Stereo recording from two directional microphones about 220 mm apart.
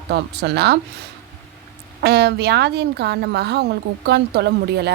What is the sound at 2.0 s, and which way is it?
A woman's voice, 45° right (ahead or behind).